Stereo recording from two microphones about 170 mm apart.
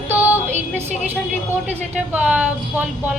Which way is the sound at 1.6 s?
10° right (ahead or behind).